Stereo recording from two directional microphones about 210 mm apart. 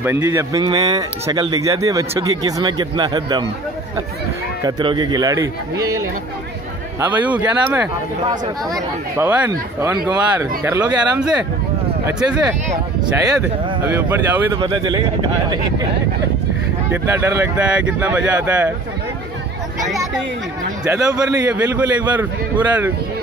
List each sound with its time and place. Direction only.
0.0 s speech: 10° right (ahead or behind)
4.6 s speech: 20° right (ahead or behind); by 12.4 s 5° right (ahead or behind)
13.8 s speech: 10° right (ahead or behind)
14.6 s speech: 20° right (ahead or behind)
16.9 s speech: 10° right (ahead or behind)
20.8 s speech: 15° right (ahead or behind)